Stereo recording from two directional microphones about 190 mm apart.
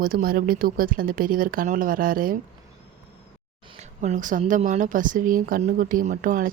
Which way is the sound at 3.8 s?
40° right (ahead or behind).